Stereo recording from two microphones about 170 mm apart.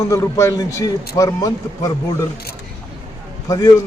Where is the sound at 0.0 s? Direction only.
15° left (ahead or behind).